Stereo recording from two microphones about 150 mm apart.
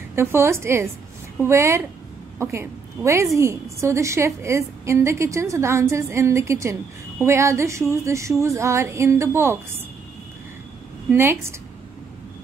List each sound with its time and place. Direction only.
0.1 s a woman's voice: 15° right (ahead or behind)
11.1 s a woman's voice: 15° right (ahead or behind)